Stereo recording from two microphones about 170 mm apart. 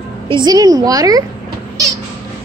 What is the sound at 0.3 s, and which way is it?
Speech, 25° right (ahead or behind).